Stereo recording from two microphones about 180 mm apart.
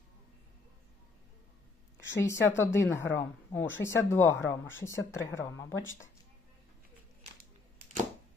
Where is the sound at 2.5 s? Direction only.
15° left (ahead or behind).